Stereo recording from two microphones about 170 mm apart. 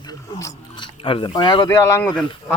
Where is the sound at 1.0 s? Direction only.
30° left (ahead or behind).